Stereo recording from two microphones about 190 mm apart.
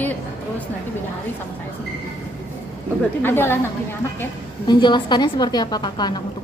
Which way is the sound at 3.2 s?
10° left (ahead or behind).